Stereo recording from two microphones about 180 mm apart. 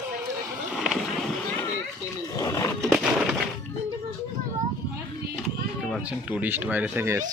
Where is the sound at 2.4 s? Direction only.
15° left (ahead or behind).